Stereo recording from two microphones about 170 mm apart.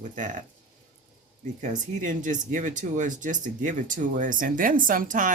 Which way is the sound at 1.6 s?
50° right (ahead or behind).